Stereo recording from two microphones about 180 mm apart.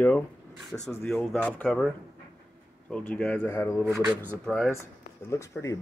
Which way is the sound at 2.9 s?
10° left (ahead or behind).